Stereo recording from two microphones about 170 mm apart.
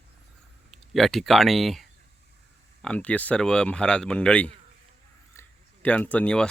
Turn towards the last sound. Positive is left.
turn(degrees=5)  # may be behind; listen again after turning